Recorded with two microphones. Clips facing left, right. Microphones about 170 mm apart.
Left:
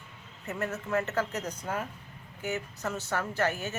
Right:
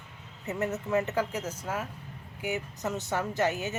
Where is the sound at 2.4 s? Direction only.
15° right (ahead or behind).